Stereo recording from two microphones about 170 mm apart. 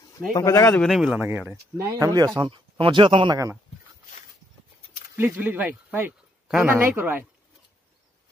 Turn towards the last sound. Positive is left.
turn(degrees=-10)  # may be behind; listen again after turning